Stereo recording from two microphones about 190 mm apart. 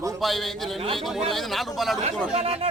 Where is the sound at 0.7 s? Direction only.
30° right (ahead or behind).